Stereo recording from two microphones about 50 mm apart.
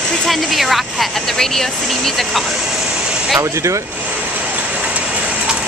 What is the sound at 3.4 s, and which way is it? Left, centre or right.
Speech, right.